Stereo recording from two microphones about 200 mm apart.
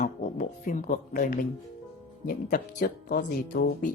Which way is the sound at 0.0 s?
40° left (ahead or behind).